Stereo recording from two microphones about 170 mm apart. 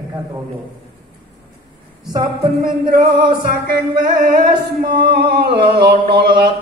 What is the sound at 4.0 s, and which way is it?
Music, 55° right (ahead or behind).